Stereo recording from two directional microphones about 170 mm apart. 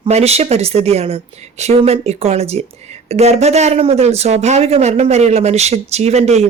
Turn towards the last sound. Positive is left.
turn(degrees=-40)  # may be behind; listen again after turning